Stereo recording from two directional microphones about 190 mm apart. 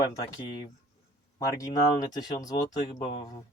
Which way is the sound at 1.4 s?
15° left (ahead or behind).